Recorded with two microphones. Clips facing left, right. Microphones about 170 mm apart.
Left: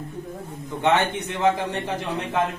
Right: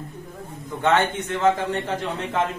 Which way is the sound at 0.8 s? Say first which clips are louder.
Right 1 dB; 15° left (ahead or behind).